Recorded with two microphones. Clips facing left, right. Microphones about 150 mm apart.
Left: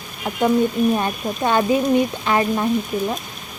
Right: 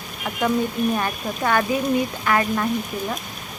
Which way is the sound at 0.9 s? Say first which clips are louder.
Left 3 dB; 25° left (ahead or behind).